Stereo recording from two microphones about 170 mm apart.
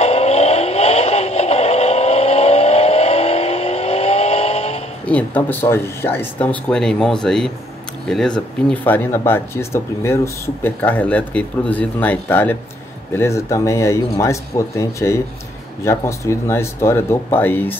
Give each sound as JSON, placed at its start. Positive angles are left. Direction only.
{"t": 0.0, "sound": "vehicle", "side_deg": 40}
{"t": 5.0, "sound": "speech", "side_deg": 10}